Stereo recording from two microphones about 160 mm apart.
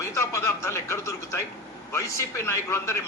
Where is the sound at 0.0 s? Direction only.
20° left (ahead or behind).